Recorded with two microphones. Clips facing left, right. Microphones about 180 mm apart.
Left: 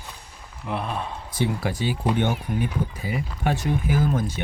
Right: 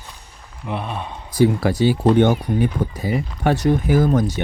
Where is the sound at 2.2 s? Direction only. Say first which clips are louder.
Right 8 dB; 75° right (ahead or behind).